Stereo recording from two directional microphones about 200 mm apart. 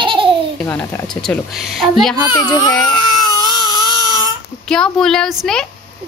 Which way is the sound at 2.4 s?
20° left (ahead or behind).